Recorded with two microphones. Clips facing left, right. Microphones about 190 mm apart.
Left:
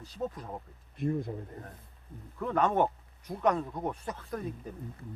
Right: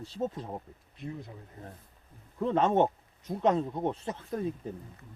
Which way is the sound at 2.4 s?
25° right (ahead or behind).